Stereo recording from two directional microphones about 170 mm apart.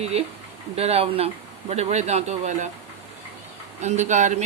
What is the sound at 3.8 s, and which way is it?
Speech, 45° right (ahead or behind).